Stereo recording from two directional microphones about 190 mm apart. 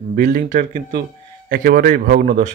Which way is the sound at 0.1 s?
50° right (ahead or behind).